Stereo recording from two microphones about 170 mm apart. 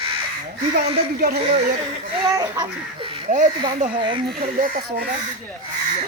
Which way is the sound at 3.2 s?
50° right (ahead or behind).